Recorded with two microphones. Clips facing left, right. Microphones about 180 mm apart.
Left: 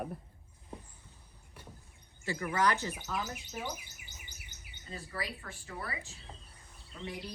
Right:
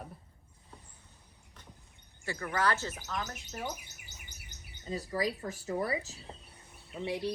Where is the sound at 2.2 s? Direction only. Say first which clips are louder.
Left 1 dB; 20° left (ahead or behind).